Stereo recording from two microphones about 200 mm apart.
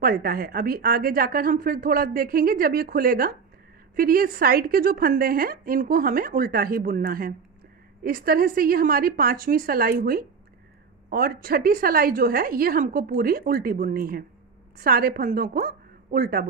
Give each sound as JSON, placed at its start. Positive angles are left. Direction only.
{"t": 0.0, "sound": "a woman's voice", "side_deg": -45}